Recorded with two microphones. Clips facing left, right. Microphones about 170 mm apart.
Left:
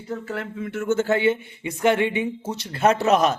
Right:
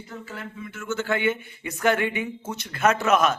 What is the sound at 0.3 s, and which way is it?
Speech, 65° left (ahead or behind).